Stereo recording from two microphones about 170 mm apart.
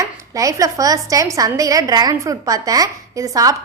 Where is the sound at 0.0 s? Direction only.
20° right (ahead or behind).